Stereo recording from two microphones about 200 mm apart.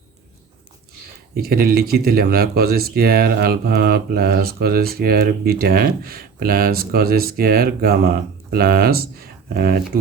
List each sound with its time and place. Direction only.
1.4 s speech: 50° right (ahead or behind)